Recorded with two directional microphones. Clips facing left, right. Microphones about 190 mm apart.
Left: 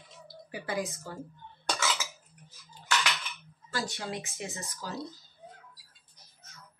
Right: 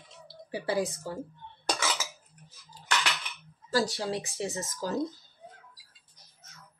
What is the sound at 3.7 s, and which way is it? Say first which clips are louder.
Speech: right 7 dB; 35° right (ahead or behind).